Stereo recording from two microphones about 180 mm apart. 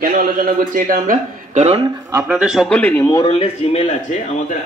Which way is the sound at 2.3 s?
5° right (ahead or behind).